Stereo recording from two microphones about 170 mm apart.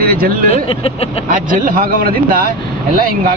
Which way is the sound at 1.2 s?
50° right (ahead or behind).